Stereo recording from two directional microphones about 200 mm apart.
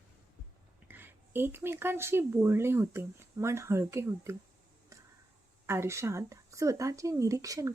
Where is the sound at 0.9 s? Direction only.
10° right (ahead or behind).